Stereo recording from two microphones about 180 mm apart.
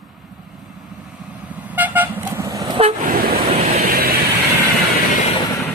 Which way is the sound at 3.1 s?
55° right (ahead or behind).